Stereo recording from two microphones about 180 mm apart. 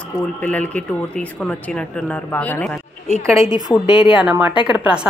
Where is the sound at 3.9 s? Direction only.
30° left (ahead or behind).